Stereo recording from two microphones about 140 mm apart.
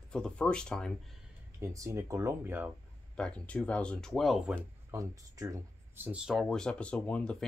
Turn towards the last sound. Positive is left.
turn(degrees=10)  # may be behind; listen again after turning